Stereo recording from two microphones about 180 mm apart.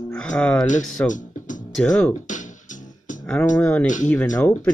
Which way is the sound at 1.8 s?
5° left (ahead or behind).